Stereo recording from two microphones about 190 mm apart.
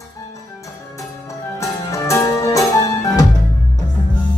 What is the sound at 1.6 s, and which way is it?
Music, 15° left (ahead or behind).